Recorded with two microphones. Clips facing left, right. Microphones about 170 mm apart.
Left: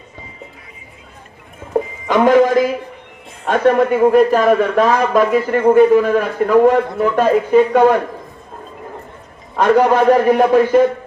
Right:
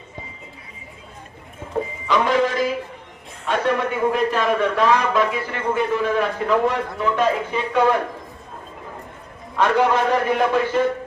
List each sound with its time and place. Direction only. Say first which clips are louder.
2.0 s music: left 8 dB; 50° left (ahead or behind)
3.4 s a man's voice: left 8 dB; 45° left (ahead or behind)
9.6 s a man's voice: left 6 dB; 45° left (ahead or behind)